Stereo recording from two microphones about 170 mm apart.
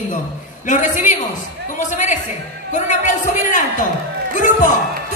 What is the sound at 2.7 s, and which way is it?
A man's voice, 45° left (ahead or behind).